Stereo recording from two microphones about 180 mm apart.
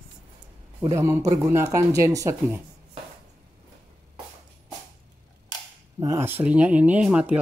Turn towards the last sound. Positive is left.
turn(degrees=-5)  # may be behind; listen again after turning